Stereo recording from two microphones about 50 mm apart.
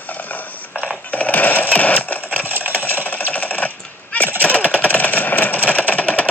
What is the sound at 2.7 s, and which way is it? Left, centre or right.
Engine, left.